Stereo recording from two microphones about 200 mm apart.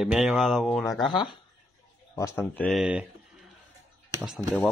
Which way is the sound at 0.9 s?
20° left (ahead or behind).